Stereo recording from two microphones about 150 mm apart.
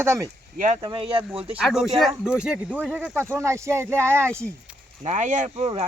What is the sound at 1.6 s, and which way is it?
Speech, centre (ahead or behind).